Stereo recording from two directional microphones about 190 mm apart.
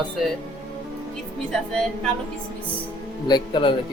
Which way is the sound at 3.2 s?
25° left (ahead or behind).